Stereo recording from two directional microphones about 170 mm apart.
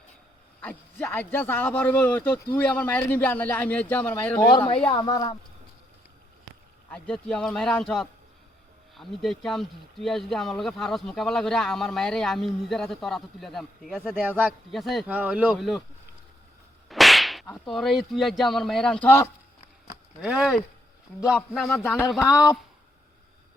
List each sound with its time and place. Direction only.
0.6 s a man's voice: 10° left (ahead or behind)
4.4 s speech: 25° left (ahead or behind)
6.9 s speech: 5° left (ahead or behind)
14.2 s a man's voice: 10° right (ahead or behind)
14.7 s speech: centre (ahead or behind)
16.9 s whip: centre (ahead or behind)
20.2 s speech: 5° right (ahead or behind)